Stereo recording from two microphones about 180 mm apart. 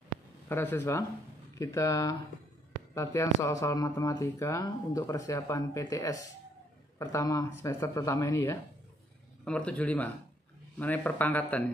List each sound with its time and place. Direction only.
0.5 s speech: 10° left (ahead or behind)